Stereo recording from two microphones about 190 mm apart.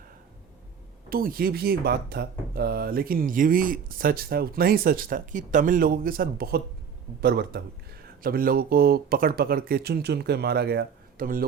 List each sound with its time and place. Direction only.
1.1 s a man's voice: 50° right (ahead or behind)